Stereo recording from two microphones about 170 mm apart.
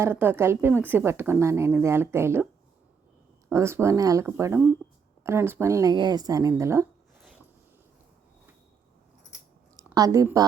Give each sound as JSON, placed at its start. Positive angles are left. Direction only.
{"t": 0.0, "sound": "speech", "side_deg": -10}
{"t": 3.5, "sound": "speech", "side_deg": -15}
{"t": 9.7, "sound": "a sound", "side_deg": -20}